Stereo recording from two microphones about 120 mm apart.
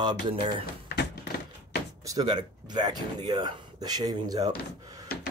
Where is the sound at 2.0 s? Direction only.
30° right (ahead or behind).